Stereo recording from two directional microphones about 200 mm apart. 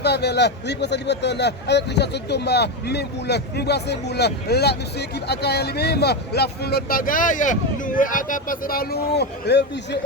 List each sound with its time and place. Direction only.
0.0 s speech: 55° left (ahead or behind)